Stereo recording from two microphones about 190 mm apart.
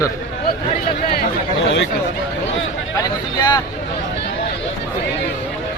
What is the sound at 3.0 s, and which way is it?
Speech, 20° left (ahead or behind).